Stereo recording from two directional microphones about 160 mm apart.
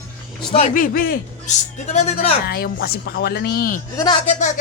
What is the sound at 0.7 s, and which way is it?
Speech, 60° left (ahead or behind).